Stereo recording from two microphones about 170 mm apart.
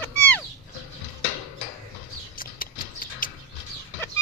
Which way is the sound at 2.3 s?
55° left (ahead or behind).